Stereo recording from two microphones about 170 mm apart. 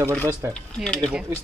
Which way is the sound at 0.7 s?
5° left (ahead or behind).